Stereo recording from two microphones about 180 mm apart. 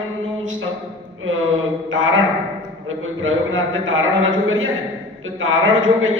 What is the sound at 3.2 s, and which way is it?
A man's voice, 90° right.